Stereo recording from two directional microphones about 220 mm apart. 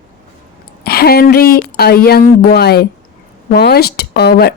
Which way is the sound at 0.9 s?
45° left (ahead or behind).